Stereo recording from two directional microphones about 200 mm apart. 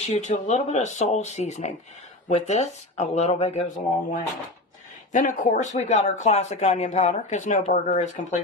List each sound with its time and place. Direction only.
0.0 s speech: 35° left (ahead or behind)